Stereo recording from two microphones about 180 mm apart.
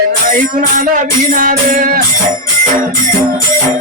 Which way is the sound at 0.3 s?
45° right (ahead or behind).